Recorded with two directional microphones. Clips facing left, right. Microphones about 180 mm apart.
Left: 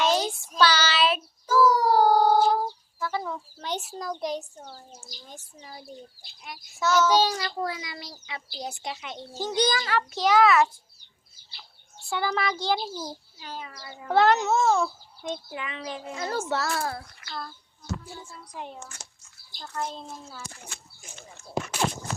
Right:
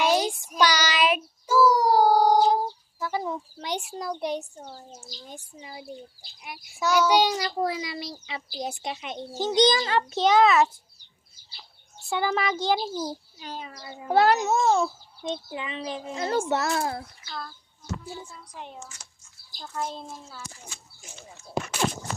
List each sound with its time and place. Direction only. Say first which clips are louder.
0.0 s child singing: right 1 dB; 10° right (ahead or behind)
3.0 s a child's voice: right 2 dB; 15° right (ahead or behind)
12.0 s a child's voice: right 2 dB; 20° right (ahead or behind)
18.8 s a child's voice: even; 55° left (ahead or behind)
19.5 s a child's voice: right 1 dB; 5° right (ahead or behind)
20.1 s a child's voice: even; centre (ahead or behind)